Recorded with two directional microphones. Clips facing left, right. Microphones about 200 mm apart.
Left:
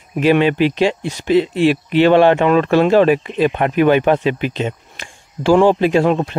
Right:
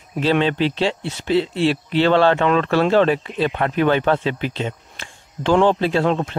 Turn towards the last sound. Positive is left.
turn(degrees=15)  # may be behind; listen again after turning